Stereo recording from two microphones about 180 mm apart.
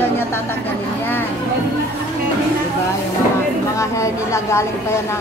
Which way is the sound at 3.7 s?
15° left (ahead or behind).